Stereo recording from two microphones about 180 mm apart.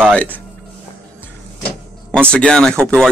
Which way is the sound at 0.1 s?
5° left (ahead or behind).